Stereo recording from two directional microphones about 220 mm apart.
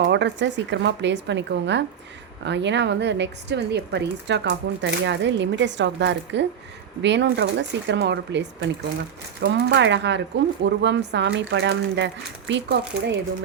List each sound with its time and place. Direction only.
0.1 s a woman's voice: 50° right (ahead or behind)